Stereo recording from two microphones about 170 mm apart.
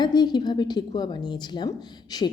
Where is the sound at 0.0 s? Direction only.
25° left (ahead or behind).